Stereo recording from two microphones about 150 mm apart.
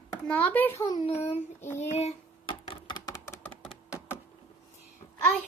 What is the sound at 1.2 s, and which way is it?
Speech, 45° left (ahead or behind).